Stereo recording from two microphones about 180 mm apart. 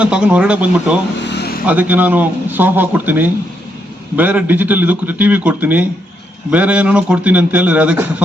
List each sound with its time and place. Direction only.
0.0 s speech: 5° right (ahead or behind)
1.3 s vehicle: 65° left (ahead or behind)
1.6 s speech: 10° right (ahead or behind)